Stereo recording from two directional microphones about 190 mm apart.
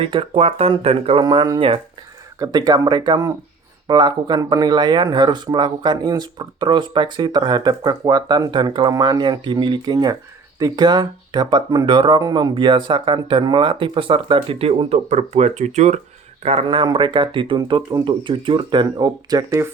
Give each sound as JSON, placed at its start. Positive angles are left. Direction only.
{"t": 0.0, "sound": "speech", "side_deg": -25}